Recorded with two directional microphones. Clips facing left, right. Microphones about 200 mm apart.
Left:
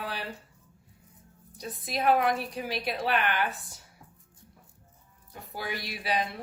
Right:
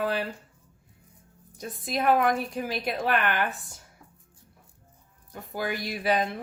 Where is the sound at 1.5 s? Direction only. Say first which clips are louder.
Right 3 dB; 50° right (ahead or behind).